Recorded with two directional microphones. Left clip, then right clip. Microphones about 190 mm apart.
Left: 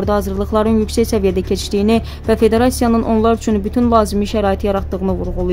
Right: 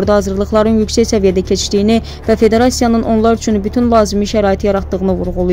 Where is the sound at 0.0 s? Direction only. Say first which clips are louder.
Right 5 dB; 15° right (ahead or behind).